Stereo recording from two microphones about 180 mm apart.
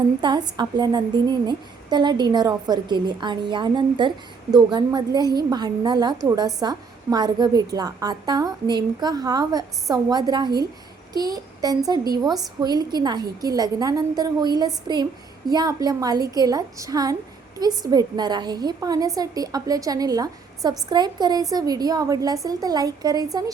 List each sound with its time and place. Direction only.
0.2 s a woman's voice: 25° right (ahead or behind)
11.1 s a sound: 20° right (ahead or behind)
12.1 s a woman's voice: 20° right (ahead or behind)